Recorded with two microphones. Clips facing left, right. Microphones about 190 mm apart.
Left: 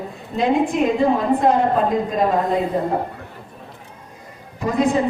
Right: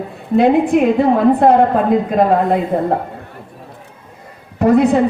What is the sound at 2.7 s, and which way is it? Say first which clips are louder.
Speech: right 4 dB; 60° right (ahead or behind).